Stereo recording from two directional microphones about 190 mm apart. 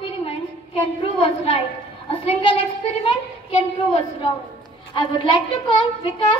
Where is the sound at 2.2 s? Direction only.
30° left (ahead or behind).